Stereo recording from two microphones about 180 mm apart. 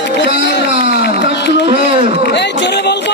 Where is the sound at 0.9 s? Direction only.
65° left (ahead or behind).